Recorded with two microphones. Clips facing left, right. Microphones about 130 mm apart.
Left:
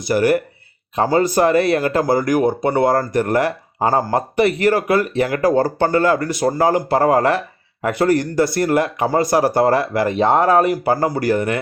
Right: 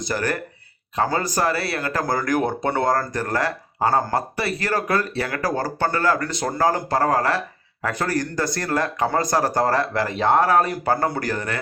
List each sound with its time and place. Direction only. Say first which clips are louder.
0.1 s speech: left 10 dB; 15° left (ahead or behind)